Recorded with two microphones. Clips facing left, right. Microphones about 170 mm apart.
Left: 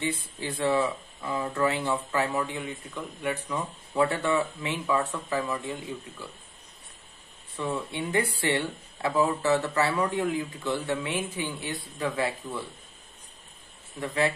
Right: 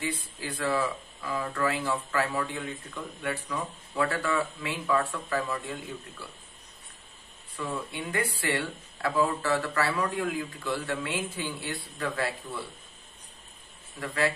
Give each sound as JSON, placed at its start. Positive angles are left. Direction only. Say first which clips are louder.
{"t": 0.0, "sound": "speech", "louder": "left 3 dB", "side_deg": 25}
{"t": 7.5, "sound": "speech", "louder": "left 3 dB", "side_deg": 25}
{"t": 13.9, "sound": "speech", "louder": "left 2 dB", "side_deg": 20}